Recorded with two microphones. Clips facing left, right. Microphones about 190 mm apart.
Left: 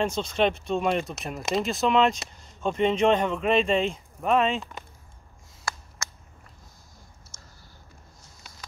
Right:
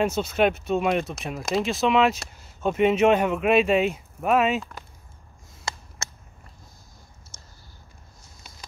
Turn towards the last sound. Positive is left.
turn(degrees=-25)  # may be behind; listen again after turning